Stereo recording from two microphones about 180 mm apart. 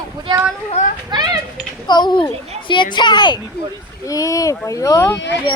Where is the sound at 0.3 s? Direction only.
25° right (ahead or behind).